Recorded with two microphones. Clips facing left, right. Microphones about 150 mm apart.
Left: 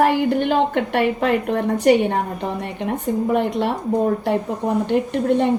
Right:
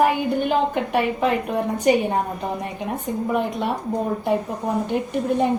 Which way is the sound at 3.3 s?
70° left (ahead or behind).